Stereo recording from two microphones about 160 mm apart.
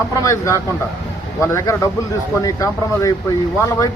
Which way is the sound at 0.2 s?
20° left (ahead or behind).